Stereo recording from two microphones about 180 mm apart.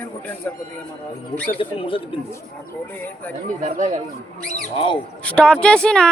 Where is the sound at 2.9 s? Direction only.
10° left (ahead or behind).